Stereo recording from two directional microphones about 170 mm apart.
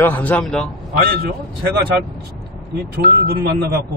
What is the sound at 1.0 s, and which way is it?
Speech, 65° right (ahead or behind).